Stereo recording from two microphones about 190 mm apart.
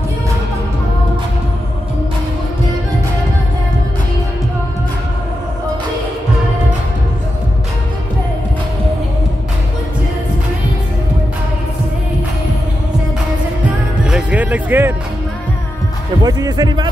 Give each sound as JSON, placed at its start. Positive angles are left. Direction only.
{"t": 14.0, "sound": "music", "side_deg": -5}
{"t": 16.2, "sound": "a man's voice", "side_deg": -20}